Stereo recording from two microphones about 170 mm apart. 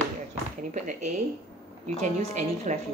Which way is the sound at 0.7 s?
45° right (ahead or behind).